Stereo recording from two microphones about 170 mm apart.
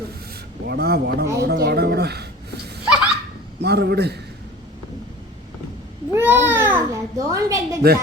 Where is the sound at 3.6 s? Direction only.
75° right (ahead or behind).